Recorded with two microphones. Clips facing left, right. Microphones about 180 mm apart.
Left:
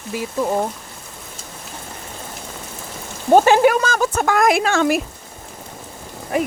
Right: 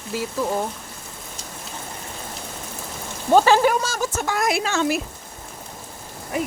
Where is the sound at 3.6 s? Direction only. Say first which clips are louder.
Left 5 dB; 65° left (ahead or behind).